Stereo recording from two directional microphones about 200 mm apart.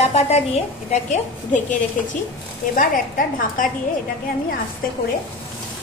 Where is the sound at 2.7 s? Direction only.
45° left (ahead or behind).